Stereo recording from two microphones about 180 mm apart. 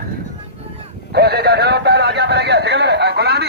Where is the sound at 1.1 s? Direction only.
65° right (ahead or behind).